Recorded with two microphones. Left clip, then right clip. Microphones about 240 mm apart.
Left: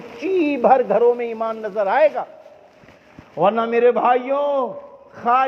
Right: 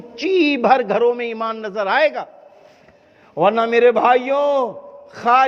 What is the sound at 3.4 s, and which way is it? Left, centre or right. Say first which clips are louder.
A man's voice: right 2 dB; right.